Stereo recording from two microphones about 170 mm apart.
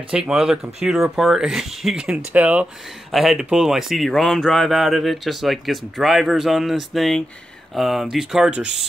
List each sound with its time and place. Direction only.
0.1 s speech: 5° right (ahead or behind)